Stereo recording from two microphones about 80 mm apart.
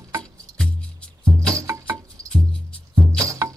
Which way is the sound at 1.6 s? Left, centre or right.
Right.